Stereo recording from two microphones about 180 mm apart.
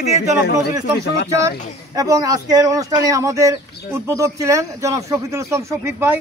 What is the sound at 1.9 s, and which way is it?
Speech, 20° right (ahead or behind).